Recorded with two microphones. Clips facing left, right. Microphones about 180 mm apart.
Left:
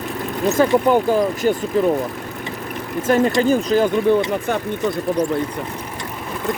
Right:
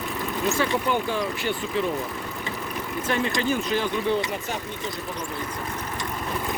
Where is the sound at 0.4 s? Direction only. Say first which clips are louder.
Left 10 dB; 45° left (ahead or behind).